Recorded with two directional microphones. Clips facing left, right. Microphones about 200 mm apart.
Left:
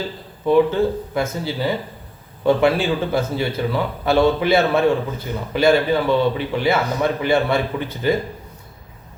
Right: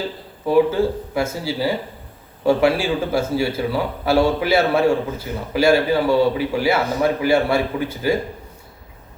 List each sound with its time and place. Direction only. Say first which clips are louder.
0.4 s a man's voice: left 1 dB; 5° right (ahead or behind)